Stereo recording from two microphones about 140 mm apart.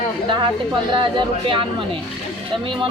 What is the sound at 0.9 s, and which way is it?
Speech, 35° right (ahead or behind).